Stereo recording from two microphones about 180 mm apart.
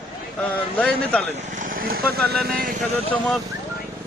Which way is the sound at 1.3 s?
45° right (ahead or behind).